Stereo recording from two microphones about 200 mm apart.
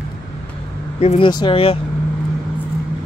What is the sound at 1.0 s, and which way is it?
Speech, 30° left (ahead or behind).